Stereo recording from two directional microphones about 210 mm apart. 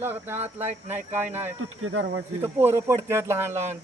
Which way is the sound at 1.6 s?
85° right.